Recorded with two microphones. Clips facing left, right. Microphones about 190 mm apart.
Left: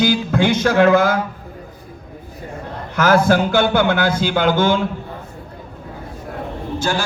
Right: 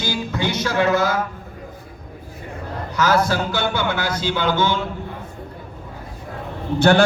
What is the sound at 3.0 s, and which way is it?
Speech, 50° left (ahead or behind).